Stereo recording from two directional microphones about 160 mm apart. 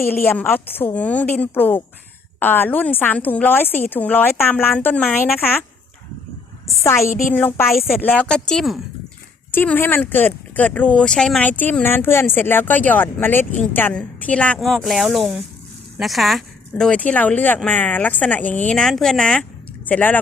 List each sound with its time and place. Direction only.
0.1 s speech: 15° left (ahead or behind)
6.8 s speech: 15° left (ahead or behind)
9.5 s speech: 10° left (ahead or behind)